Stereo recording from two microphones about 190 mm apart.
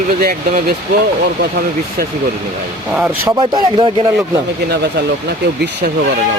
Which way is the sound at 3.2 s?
20° right (ahead or behind).